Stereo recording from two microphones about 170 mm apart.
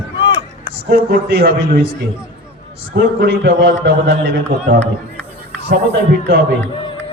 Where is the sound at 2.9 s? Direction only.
80° right.